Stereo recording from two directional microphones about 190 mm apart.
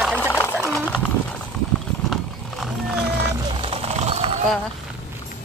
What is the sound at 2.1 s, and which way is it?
Wild animals, centre (ahead or behind).